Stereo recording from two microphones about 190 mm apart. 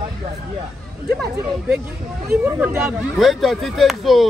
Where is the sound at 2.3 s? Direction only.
10° right (ahead or behind).